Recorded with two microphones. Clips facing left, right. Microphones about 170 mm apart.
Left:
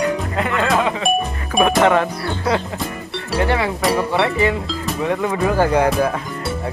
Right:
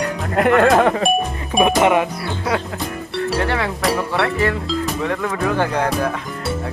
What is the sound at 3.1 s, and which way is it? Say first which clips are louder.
Speech: left 1 dB; centre (ahead or behind).